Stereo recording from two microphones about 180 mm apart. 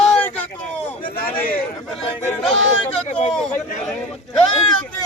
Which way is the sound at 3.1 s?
40° left (ahead or behind).